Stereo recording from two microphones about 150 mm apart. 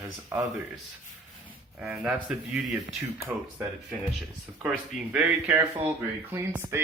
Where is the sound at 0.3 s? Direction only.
15° right (ahead or behind).